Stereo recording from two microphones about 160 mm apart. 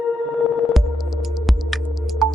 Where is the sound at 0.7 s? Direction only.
Centre (ahead or behind).